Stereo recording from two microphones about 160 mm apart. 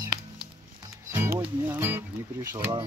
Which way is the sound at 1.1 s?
15° right (ahead or behind).